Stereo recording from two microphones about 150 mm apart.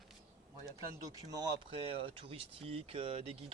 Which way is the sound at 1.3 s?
25° right (ahead or behind).